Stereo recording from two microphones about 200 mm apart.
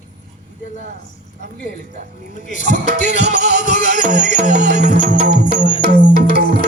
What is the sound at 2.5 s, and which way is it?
Music, 40° left (ahead or behind).